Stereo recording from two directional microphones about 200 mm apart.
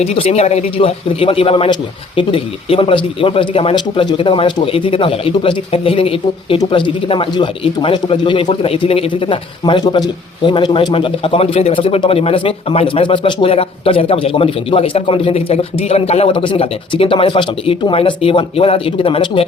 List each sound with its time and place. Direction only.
0.0 s a man's voice: 30° left (ahead or behind)